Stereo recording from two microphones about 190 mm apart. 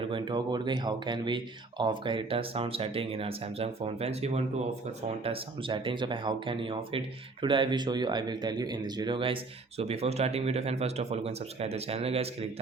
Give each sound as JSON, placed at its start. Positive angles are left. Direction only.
{"t": 0.0, "sound": "speech", "side_deg": -25}